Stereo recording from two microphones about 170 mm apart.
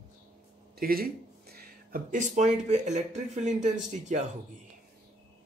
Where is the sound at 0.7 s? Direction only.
60° right (ahead or behind); by 4.2 s 45° right (ahead or behind).